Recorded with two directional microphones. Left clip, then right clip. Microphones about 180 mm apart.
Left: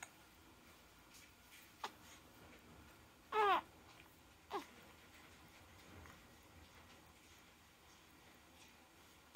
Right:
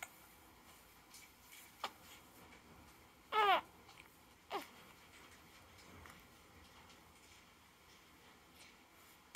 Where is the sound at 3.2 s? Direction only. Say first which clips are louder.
Right 2 dB; 20° right (ahead or behind).